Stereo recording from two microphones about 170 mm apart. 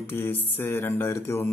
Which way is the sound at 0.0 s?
15° left (ahead or behind).